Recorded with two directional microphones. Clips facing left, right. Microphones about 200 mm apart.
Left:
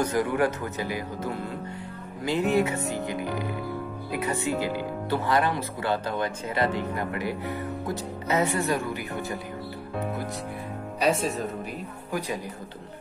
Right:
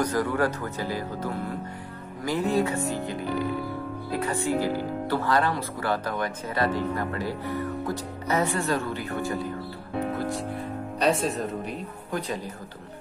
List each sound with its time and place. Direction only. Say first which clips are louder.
0.0 s speech: even; 20° left (ahead or behind)
2.5 s speech: even; 20° left (ahead or behind)
11.0 s speech: even; centre (ahead or behind)
12.1 s speech: even; 15° left (ahead or behind)